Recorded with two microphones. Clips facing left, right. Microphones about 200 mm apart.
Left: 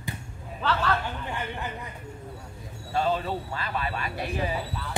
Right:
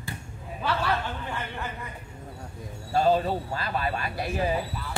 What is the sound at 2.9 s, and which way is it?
Speech, 40° right (ahead or behind).